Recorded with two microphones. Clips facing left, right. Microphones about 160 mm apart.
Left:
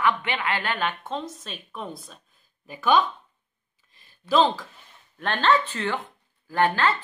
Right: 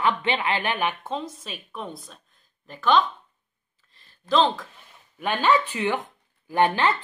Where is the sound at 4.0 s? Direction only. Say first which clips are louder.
Left 1 dB; 5° left (ahead or behind).